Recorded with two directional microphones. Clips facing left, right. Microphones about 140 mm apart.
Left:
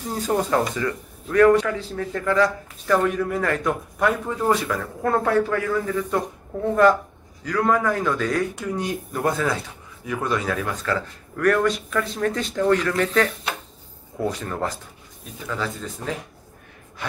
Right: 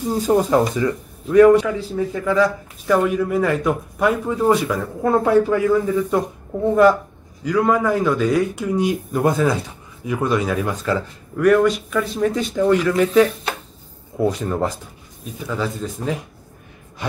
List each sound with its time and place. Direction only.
0.1 s a man's voice: 15° right (ahead or behind)